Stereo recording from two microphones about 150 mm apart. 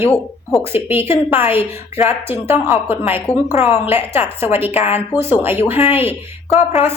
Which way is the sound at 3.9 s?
15° right (ahead or behind).